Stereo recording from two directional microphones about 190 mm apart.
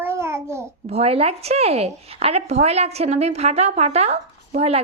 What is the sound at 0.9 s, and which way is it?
A woman's voice, 30° right (ahead or behind).